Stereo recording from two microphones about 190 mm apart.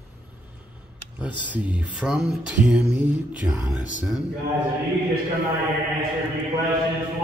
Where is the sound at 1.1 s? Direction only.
5° right (ahead or behind).